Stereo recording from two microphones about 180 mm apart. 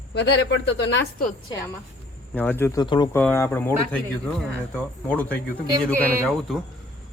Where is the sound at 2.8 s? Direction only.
25° left (ahead or behind).